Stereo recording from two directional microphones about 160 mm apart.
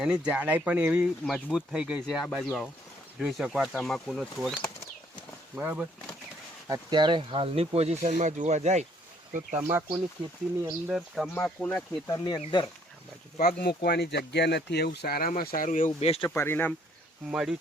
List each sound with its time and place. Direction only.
0.0 s speech: 5° right (ahead or behind)
5.5 s speech: 10° right (ahead or behind)
6.7 s speech: 30° right (ahead or behind); by 8.9 s 45° right (ahead or behind)
9.6 s speech: 15° right (ahead or behind)
10.9 s speech: centre (ahead or behind)
12.1 s speech: 25° left (ahead or behind)
13.4 s speech: 75° left (ahead or behind); by 15.9 s 55° left (ahead or behind)
16.0 s speech: 40° left (ahead or behind)
16.2 s speech: 15° left (ahead or behind)
17.3 s speech: 5° right (ahead or behind)